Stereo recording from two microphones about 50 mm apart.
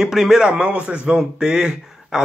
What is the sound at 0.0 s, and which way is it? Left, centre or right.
Speech, centre.